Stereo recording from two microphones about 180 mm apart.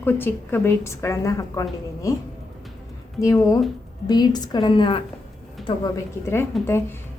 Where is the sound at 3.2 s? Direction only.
20° left (ahead or behind).